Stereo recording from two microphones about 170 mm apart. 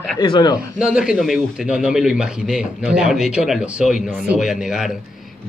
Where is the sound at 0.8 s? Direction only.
5° right (ahead or behind).